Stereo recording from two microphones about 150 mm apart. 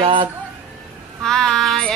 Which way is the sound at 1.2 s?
5° left (ahead or behind).